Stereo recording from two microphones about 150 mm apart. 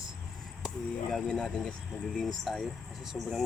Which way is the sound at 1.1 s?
5° left (ahead or behind).